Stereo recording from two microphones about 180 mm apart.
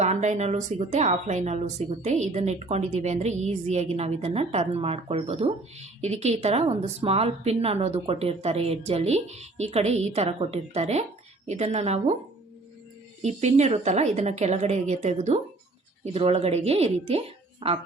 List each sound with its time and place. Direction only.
0.0 s a woman's voice: 40° right (ahead or behind)
13.2 s a woman's voice: 40° right (ahead or behind)